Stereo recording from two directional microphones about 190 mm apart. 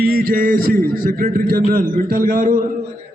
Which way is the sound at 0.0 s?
50° right (ahead or behind).